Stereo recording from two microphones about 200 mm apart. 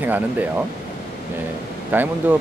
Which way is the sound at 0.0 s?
10° right (ahead or behind).